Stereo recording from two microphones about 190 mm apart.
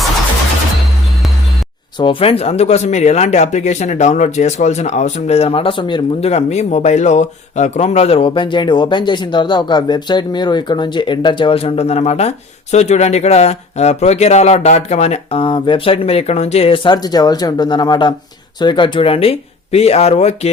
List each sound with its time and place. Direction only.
2.0 s speech: 25° left (ahead or behind)